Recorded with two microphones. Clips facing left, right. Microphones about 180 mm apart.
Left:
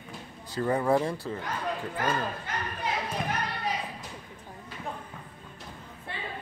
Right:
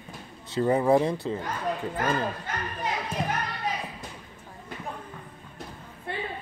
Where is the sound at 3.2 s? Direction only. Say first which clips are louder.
Right 6 dB; 30° right (ahead or behind).